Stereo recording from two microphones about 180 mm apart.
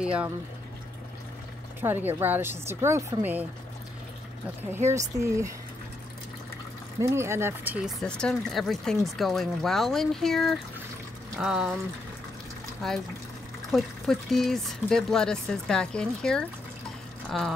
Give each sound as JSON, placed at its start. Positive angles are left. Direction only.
{"t": 0.0, "sound": "a woman's voice", "side_deg": -5}
{"t": 1.8, "sound": "a woman's voice", "side_deg": -10}
{"t": 4.6, "sound": "a woman's voice", "side_deg": -15}
{"t": 7.0, "sound": "a woman's voice", "side_deg": -15}
{"t": 8.0, "sound": "speech", "side_deg": 5}
{"t": 13.7, "sound": "speech", "side_deg": 0}